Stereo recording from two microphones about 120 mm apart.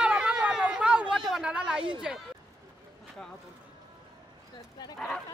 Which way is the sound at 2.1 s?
5° right (ahead or behind).